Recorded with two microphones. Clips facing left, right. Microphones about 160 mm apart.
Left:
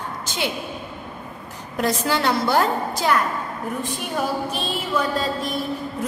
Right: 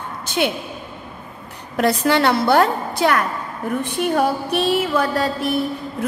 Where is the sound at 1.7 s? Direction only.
65° right (ahead or behind).